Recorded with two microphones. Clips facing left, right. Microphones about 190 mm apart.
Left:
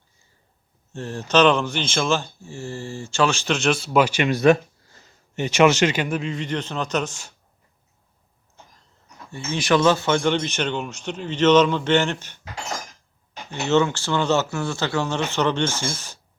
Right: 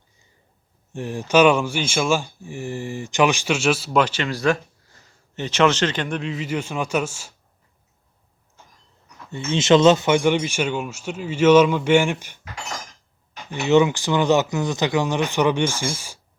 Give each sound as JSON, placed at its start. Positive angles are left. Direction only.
{"t": 0.9, "sound": "speech", "side_deg": -15}
{"t": 4.0, "sound": "a sound", "side_deg": 15}
{"t": 5.4, "sound": "speech", "side_deg": 10}
{"t": 9.3, "sound": "speech", "side_deg": -25}
{"t": 13.5, "sound": "speech", "side_deg": -15}